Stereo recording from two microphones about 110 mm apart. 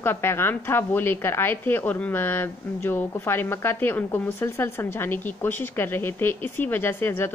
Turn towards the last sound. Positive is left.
turn(degrees=20)  # may be behind; listen again after turning